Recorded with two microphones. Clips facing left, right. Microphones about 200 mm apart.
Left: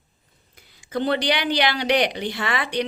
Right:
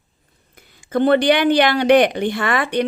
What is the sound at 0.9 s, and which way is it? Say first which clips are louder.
A woman's voice: right 8 dB; 55° right (ahead or behind).